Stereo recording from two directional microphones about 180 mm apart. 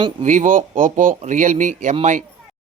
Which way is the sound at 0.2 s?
45° right (ahead or behind).